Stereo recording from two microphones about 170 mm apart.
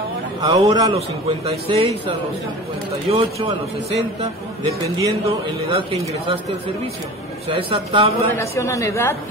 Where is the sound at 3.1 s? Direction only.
40° right (ahead or behind).